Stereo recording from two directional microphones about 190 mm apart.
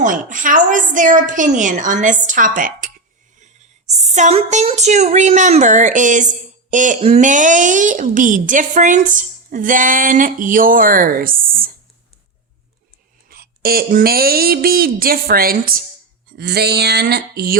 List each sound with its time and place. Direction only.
0.0 s a woman's voice: 45° right (ahead or behind)
13.3 s a woman's voice: 50° right (ahead or behind)
16.3 s a sound: 60° right (ahead or behind)